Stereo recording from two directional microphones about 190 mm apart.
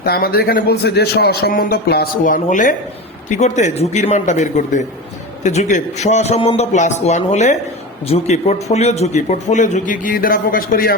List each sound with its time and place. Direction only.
0.0 s a man's voice: 55° left (ahead or behind)